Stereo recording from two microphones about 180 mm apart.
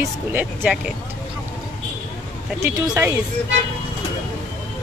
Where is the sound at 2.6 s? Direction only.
15° right (ahead or behind).